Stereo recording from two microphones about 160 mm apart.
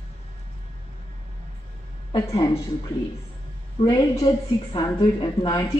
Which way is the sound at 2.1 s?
20° left (ahead or behind).